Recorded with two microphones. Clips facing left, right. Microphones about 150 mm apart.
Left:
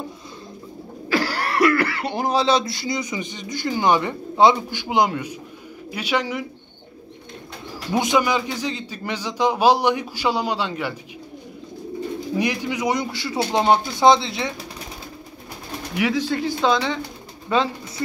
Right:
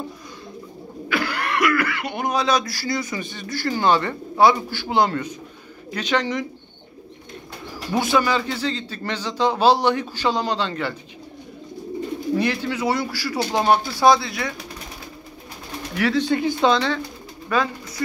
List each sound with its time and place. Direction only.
1.0 s a man's voice: 35° left (ahead or behind); by 6.4 s 10° left (ahead or behind)
7.9 s a man's voice: 15° left (ahead or behind)
12.4 s a man's voice: 15° left (ahead or behind)
16.0 s a man's voice: 15° left (ahead or behind)
17.5 s speech: 25° left (ahead or behind)